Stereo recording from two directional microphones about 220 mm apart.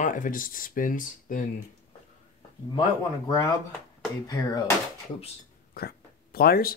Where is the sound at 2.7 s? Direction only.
15° left (ahead or behind).